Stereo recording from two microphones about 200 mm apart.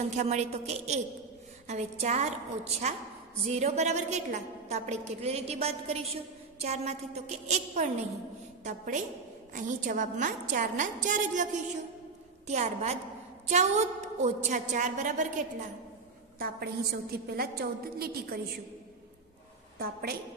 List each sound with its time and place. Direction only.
0.2 s a woman's voice: 35° right (ahead or behind)
12.4 s a woman's voice: 35° right (ahead or behind)
16.3 s a woman's voice: 50° right (ahead or behind)
19.8 s a woman's voice: 50° right (ahead or behind)